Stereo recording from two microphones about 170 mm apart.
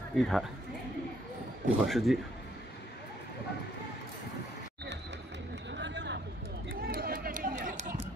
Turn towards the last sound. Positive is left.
turn(degrees=-50)  # may be behind; listen again after turning